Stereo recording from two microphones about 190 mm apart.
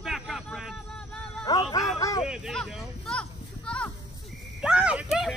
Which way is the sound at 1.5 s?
20° left (ahead or behind).